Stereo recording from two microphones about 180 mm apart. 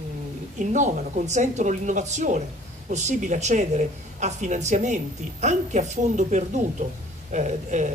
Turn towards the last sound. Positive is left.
turn(degrees=-40)  # may be behind; listen again after turning